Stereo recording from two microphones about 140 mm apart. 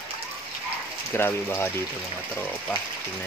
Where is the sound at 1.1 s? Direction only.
15° left (ahead or behind).